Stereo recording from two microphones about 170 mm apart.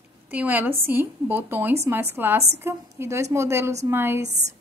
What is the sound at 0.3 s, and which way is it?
A woman's voice, 10° right (ahead or behind).